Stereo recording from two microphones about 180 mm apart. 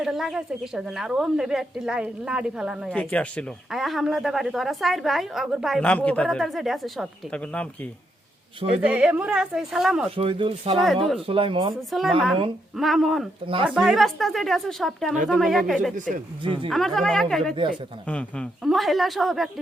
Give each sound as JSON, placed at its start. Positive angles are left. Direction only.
{"t": 0.0, "sound": "speech", "side_deg": 0}
{"t": 2.9, "sound": "speech", "side_deg": 5}
{"t": 8.8, "sound": "speech", "side_deg": -5}
{"t": 10.2, "sound": "speech", "side_deg": -30}
{"t": 10.8, "sound": "speech", "side_deg": 0}
{"t": 11.3, "sound": "speech", "side_deg": -30}
{"t": 11.9, "sound": "speech", "side_deg": 0}
{"t": 16.0, "sound": "speech", "side_deg": -45}
{"t": 16.6, "sound": "speech", "side_deg": 0}